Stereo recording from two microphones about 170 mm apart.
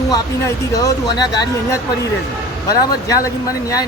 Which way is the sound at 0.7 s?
20° left (ahead or behind).